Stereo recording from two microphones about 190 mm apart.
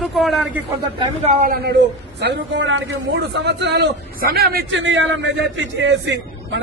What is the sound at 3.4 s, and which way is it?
A man's voice, 60° right (ahead or behind).